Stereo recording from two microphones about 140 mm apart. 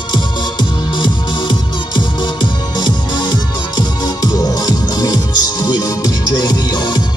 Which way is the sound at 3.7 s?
30° left (ahead or behind).